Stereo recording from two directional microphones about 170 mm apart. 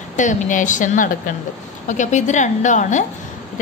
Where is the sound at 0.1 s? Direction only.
45° left (ahead or behind).